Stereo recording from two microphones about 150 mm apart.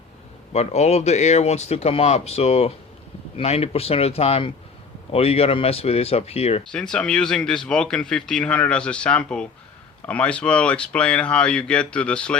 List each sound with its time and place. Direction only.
0.5 s speech: 45° left (ahead or behind)
6.7 s speech: 5° left (ahead or behind)